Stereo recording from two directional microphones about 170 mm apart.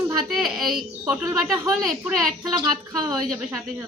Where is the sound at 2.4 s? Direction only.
25° right (ahead or behind).